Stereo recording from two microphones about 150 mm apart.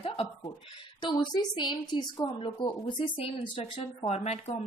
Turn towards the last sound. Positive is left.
turn(degrees=45)  # may be behind; listen again after turning